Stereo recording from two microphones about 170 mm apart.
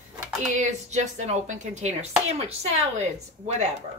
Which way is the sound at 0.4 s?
45° right (ahead or behind).